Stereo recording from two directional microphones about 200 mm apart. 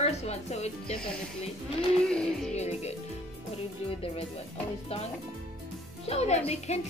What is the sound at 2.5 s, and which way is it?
Speech, 35° left (ahead or behind).